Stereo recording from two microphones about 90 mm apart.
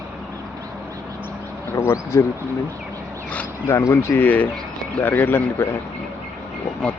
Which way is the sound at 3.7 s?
30° left (ahead or behind).